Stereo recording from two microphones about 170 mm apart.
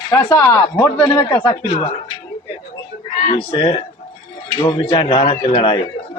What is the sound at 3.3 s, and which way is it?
A man's voice, 30° left (ahead or behind).